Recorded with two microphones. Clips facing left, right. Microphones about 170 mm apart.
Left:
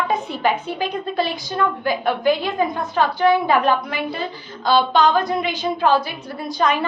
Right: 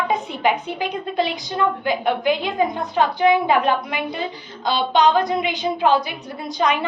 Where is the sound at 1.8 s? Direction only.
20° right (ahead or behind).